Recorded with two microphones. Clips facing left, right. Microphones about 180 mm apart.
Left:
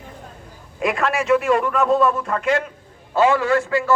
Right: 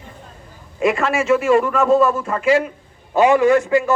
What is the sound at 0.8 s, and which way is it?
A man's voice, centre (ahead or behind).